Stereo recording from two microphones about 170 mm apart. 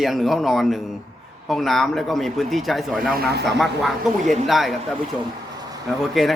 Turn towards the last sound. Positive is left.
turn(degrees=0)  # may be behind; listen again after turning